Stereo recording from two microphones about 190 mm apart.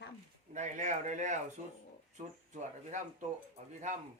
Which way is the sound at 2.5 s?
40° right (ahead or behind).